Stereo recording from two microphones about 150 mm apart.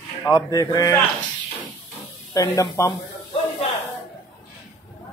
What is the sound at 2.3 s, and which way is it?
Speech, 25° left (ahead or behind).